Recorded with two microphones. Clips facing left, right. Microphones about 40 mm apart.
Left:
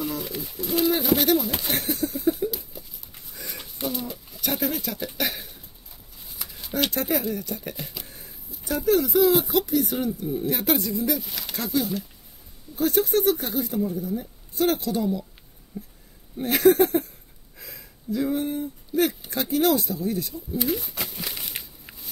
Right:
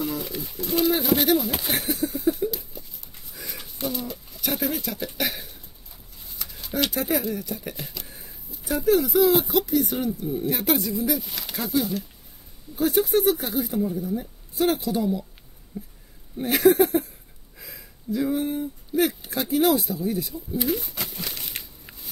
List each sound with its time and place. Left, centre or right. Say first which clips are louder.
0.0 s pigeon: right 1 dB; centre
6.2 s a sound: even; centre
6.9 s speech: even; centre
15.7 s speech: right 1 dB; right
16.3 s speech: even; centre